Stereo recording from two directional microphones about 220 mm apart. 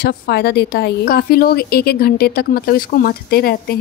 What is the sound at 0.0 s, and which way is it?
A woman's voice, 45° left (ahead or behind).